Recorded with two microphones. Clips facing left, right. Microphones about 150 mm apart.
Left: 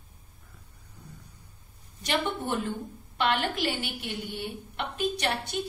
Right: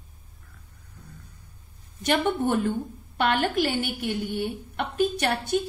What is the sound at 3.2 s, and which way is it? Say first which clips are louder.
A woman's voice: right 4 dB; 50° right (ahead or behind).